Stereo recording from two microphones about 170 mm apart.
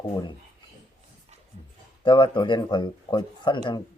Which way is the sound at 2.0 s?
30° left (ahead or behind).